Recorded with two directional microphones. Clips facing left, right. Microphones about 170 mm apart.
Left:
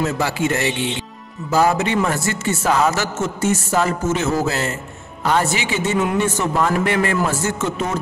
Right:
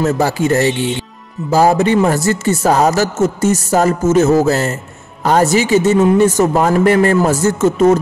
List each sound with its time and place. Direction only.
0.0 s a man's voice: 40° right (ahead or behind)